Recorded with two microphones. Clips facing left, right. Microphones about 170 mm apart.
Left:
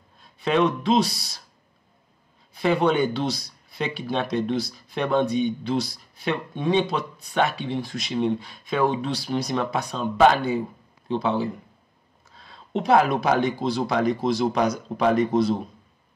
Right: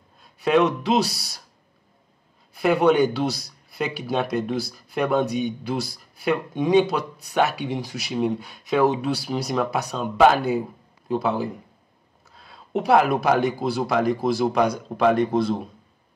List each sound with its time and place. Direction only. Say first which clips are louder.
0.4 s speech: right 3 dB; 5° right (ahead or behind)
0.7 s speech: even; 65° right (ahead or behind)
2.5 s speech: right 3 dB; 5° right (ahead or behind)